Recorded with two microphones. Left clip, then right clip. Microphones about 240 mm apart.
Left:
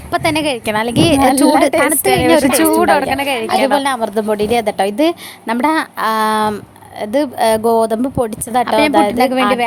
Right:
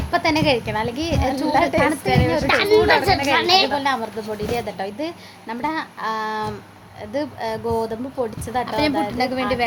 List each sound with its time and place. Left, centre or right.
0.1 s a woman's voice: left